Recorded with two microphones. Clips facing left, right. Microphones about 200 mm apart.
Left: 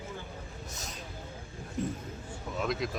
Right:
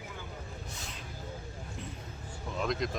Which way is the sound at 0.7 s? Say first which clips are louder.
Left 1 dB; 45° left (ahead or behind).